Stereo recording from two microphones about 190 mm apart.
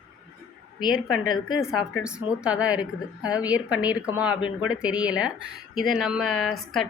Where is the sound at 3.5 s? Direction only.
5° right (ahead or behind).